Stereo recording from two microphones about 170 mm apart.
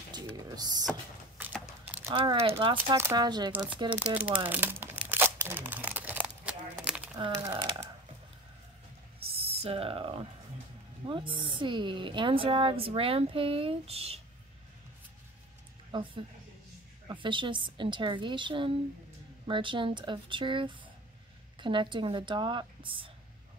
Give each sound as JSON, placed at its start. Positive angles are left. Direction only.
{"t": 0.3, "sound": "a sound", "side_deg": -20}
{"t": 1.4, "sound": "a sound", "side_deg": -10}
{"t": 2.1, "sound": "a woman's voice", "side_deg": -35}
{"t": 3.0, "sound": "speech", "side_deg": -15}
{"t": 3.3, "sound": "a woman's voice", "side_deg": -25}
{"t": 3.9, "sound": "crumpling", "side_deg": -10}
{"t": 7.6, "sound": "a woman's voice", "side_deg": -30}
{"t": 9.2, "sound": "a sound", "side_deg": -35}
{"t": 11.1, "sound": "a woman's voice", "side_deg": -30}
{"t": 15.9, "sound": "a woman's voice", "side_deg": -30}